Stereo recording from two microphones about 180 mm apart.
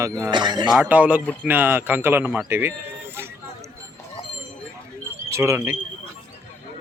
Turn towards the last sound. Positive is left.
turn(degrees=-15)  # may be behind; listen again after turning